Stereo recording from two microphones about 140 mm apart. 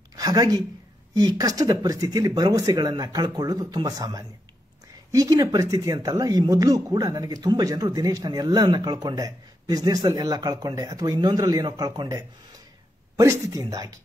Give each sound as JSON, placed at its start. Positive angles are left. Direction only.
{"t": 0.1, "sound": "a woman's voice", "side_deg": -25}